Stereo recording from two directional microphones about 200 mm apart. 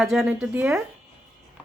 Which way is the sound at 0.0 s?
Centre (ahead or behind).